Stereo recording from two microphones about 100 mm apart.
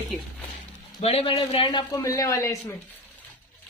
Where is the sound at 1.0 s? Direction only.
85° left.